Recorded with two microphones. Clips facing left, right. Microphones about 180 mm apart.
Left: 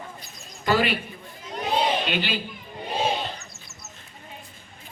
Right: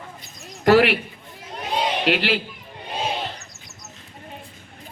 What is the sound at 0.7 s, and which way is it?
Speech, 75° right (ahead or behind).